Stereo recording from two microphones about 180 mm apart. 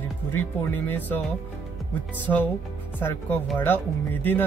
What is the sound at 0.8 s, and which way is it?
Speech, 10° left (ahead or behind).